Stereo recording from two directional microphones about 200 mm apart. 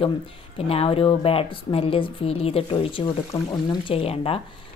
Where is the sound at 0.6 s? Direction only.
30° left (ahead or behind).